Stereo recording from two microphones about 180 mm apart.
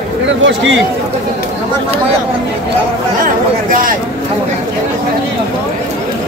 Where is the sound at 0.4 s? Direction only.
90° right.